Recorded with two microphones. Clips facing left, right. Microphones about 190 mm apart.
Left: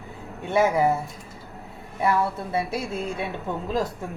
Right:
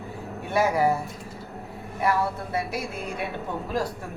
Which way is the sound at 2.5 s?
25° left (ahead or behind).